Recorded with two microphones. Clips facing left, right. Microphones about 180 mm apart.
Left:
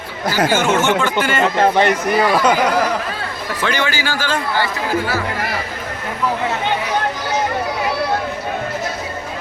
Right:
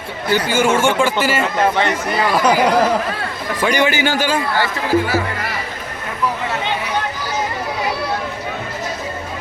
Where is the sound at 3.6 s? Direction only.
15° right (ahead or behind).